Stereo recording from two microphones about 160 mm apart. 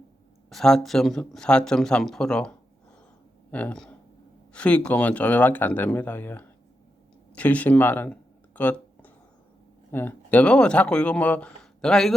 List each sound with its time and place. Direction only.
0.5 s speech: 5° left (ahead or behind)
7.3 s a sound: 10° left (ahead or behind)
9.9 s speech: 15° left (ahead or behind)